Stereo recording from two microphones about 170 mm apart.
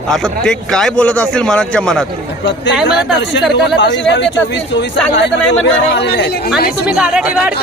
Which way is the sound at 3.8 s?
90° left.